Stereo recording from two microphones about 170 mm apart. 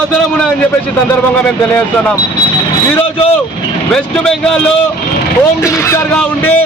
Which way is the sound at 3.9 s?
5° left (ahead or behind).